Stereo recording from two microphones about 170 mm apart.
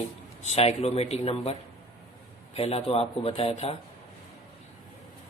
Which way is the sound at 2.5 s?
35° left (ahead or behind).